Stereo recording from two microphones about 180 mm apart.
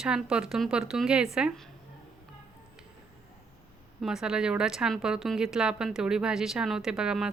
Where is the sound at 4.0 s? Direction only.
Centre (ahead or behind).